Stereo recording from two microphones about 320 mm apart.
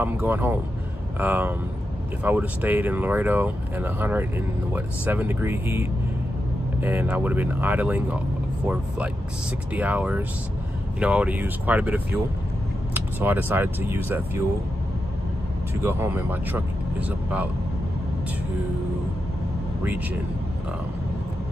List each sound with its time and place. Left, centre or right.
0.0 s speech: centre
9.8 s speech: centre
15.8 s speech: centre
19.8 s speech: centre